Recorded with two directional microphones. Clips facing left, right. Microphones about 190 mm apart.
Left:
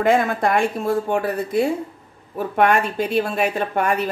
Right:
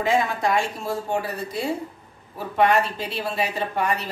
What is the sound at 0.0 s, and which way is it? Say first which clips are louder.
Speech: left 4 dB; 55° left (ahead or behind).